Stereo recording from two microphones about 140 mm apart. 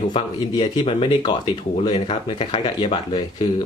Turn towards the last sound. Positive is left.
turn(degrees=35)  # may be behind; listen again after turning